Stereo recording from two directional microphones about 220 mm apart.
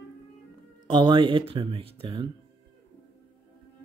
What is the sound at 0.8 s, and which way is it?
Speech, 20° right (ahead or behind).